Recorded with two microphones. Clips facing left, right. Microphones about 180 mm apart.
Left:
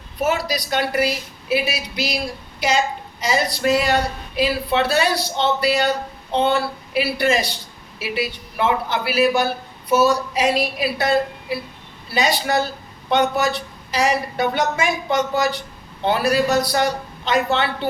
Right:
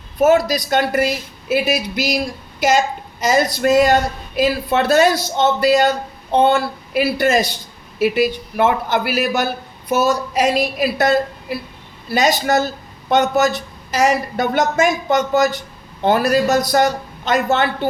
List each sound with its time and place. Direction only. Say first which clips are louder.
0.2 s a woman's voice: right 8 dB; 45° right (ahead or behind)
12.1 s a woman's voice: right 4 dB; 45° right (ahead or behind)